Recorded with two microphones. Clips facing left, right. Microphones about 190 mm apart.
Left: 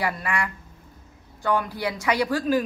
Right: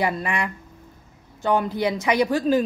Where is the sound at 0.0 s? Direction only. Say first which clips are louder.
Right 3 dB; 20° right (ahead or behind).